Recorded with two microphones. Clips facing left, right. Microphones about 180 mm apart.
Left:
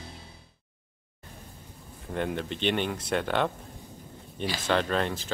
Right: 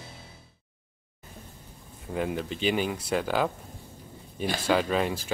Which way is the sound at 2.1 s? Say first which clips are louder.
Right 1 dB; 5° right (ahead or behind).